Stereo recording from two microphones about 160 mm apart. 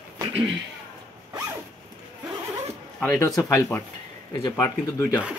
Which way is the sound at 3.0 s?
20° left (ahead or behind).